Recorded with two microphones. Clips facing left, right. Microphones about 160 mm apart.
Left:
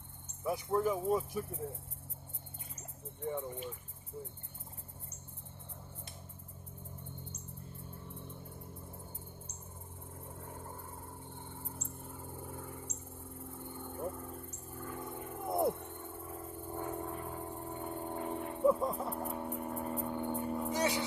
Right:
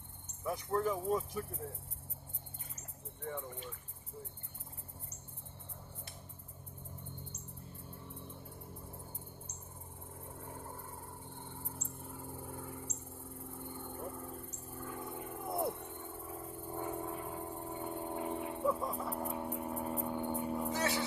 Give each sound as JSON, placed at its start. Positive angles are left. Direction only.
{"t": 0.4, "sound": "speech", "side_deg": 5}
{"t": 3.3, "sound": "speech", "side_deg": 15}
{"t": 10.4, "sound": "vehicle", "side_deg": 0}
{"t": 11.4, "sound": "a sound", "side_deg": 0}
{"t": 15.4, "sound": "music", "side_deg": 15}
{"t": 15.8, "sound": "music", "side_deg": 0}
{"t": 20.7, "sound": "a sound", "side_deg": 15}